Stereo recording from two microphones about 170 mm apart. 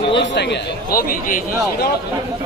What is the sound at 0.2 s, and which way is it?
A man's voice, 85° left.